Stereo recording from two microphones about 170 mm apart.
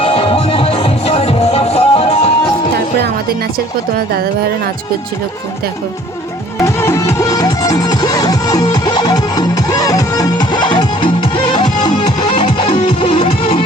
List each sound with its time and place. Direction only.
0.0 s music: 35° left (ahead or behind)
2.7 s music: 65° right (ahead or behind)
3.9 s speech: 60° right (ahead or behind)
6.6 s music: 15° left (ahead or behind)